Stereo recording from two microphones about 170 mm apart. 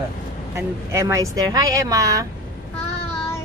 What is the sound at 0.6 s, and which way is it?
Speech, 15° right (ahead or behind).